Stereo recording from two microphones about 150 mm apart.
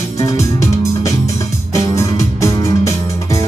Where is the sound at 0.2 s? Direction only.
20° left (ahead or behind).